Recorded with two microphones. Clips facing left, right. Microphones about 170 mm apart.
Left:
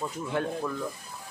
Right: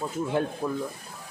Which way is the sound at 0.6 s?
25° right (ahead or behind).